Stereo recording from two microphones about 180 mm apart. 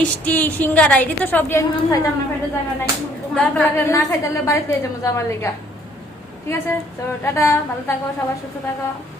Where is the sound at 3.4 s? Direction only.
10° left (ahead or behind).